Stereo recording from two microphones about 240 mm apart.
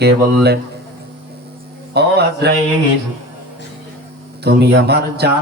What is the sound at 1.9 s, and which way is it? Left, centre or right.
Speech, right.